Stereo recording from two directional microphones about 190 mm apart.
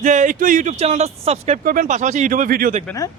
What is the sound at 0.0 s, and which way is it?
Speech, 40° right (ahead or behind).